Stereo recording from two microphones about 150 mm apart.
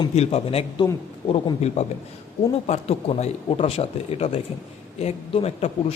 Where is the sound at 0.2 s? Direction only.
40° left (ahead or behind).